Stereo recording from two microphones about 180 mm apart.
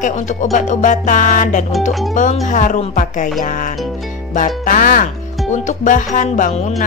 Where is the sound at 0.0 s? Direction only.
40° left (ahead or behind).